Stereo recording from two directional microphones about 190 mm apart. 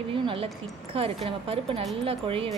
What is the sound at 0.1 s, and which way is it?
Speech, 25° right (ahead or behind).